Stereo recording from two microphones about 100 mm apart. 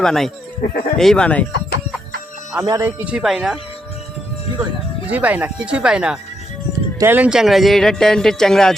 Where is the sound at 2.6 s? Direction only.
35° right (ahead or behind).